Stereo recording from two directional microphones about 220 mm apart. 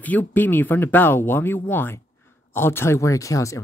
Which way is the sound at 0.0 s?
5° left (ahead or behind).